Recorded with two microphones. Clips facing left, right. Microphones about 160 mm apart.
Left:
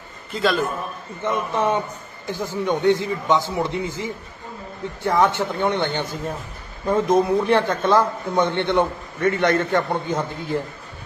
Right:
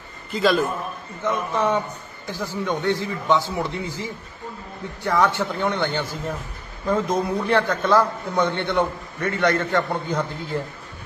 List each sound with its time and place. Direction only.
0.3 s a man's voice: centre (ahead or behind)
1.2 s a man's voice: 20° left (ahead or behind)